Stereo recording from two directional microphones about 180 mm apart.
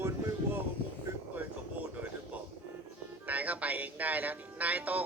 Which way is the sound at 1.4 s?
5° right (ahead or behind).